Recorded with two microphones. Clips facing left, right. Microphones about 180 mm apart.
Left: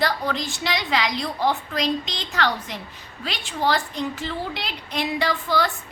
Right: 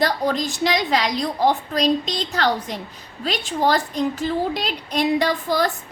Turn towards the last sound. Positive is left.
turn(degrees=-40)  # may be behind; listen again after turning